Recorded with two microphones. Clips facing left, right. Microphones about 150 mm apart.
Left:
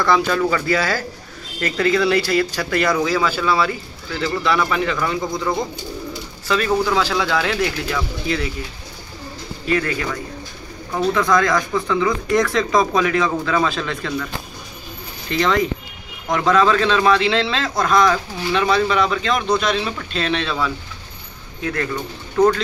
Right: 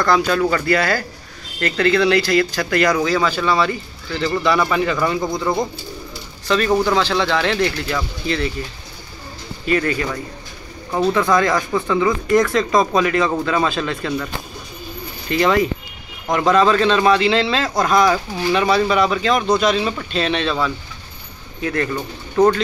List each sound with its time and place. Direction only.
0.0 s speech: centre (ahead or behind)
9.7 s speech: centre (ahead or behind)
11.0 s speech: 5° right (ahead or behind)
15.2 s speech: 5° right (ahead or behind)